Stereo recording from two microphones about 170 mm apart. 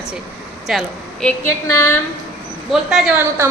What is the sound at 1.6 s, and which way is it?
Speech, 15° left (ahead or behind).